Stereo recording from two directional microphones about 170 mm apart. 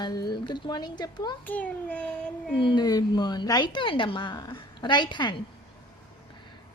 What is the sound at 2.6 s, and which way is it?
Speech, 25° left (ahead or behind).